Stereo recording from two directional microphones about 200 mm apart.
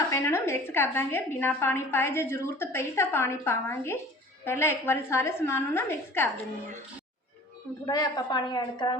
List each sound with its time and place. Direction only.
0.1 s a woman's voice: 15° left (ahead or behind)
7.9 s a woman's voice: 20° left (ahead or behind)